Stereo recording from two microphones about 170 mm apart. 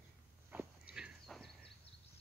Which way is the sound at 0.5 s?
5° right (ahead or behind).